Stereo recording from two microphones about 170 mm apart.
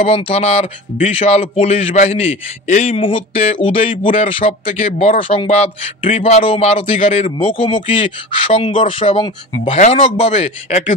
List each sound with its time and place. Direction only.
0.0 s speech: 35° left (ahead or behind)
9.8 s speech: 40° left (ahead or behind)